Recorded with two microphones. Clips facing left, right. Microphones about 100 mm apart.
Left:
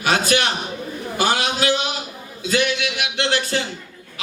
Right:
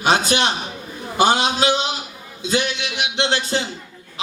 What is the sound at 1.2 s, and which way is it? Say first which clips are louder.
A man's voice: right 4 dB; 25° right (ahead or behind).